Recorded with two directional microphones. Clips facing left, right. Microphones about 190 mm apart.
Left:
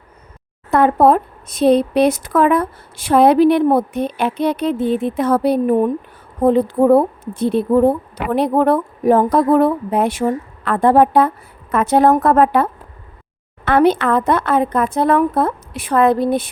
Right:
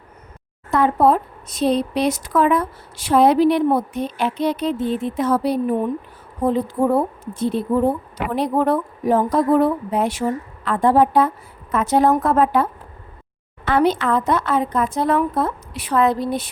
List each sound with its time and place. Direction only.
0.7 s a woman's voice: 55° left (ahead or behind)
13.7 s a woman's voice: 60° left (ahead or behind)